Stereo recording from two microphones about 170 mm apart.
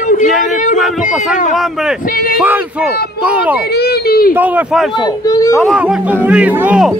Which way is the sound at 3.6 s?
70° left (ahead or behind).